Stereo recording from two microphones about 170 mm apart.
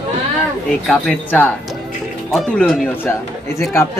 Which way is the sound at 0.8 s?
5° left (ahead or behind).